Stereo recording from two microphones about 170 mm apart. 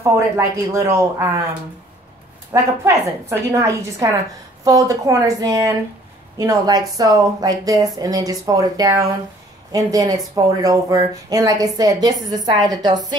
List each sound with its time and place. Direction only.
0.0 s a woman's voice: 15° right (ahead or behind)
2.5 s a woman's voice: 15° right (ahead or behind)